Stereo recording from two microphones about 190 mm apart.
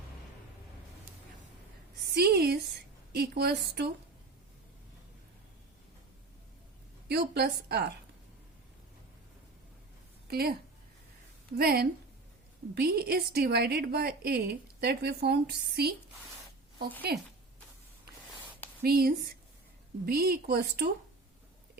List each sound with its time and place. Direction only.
2.1 s a sound: 60° right (ahead or behind)
7.1 s a woman's voice: 55° right (ahead or behind)
10.2 s speech: 55° right (ahead or behind)
11.5 s a woman's voice: 55° right (ahead or behind)
17.1 s a woman's voice: 55° right (ahead or behind)
18.8 s a woman's voice: 55° right (ahead or behind)